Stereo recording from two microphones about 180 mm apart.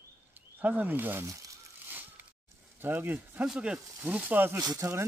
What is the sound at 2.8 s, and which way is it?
Speech, 10° right (ahead or behind).